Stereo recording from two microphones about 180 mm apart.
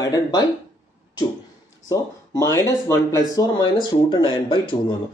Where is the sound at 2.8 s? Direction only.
15° left (ahead or behind).